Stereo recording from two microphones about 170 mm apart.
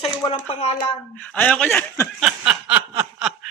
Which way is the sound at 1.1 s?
10° left (ahead or behind).